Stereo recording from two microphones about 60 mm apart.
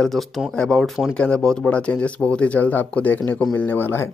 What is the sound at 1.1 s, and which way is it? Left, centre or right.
Speech, centre.